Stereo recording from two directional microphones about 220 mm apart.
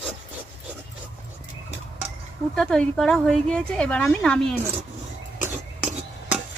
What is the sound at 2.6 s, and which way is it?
A woman's voice, 5° left (ahead or behind).